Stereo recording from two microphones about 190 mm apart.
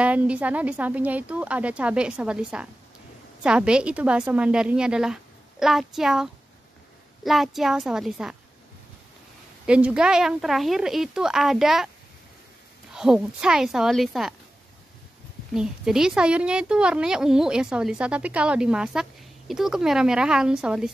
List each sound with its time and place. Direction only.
0.0 s a woman's voice: 5° right (ahead or behind)
9.7 s a woman's voice: 5° right (ahead or behind)
12.9 s a woman's voice: 5° right (ahead or behind)
15.5 s a woman's voice: 5° right (ahead or behind)